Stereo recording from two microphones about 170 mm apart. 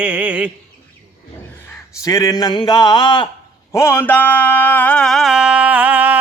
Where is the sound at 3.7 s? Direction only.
15° left (ahead or behind).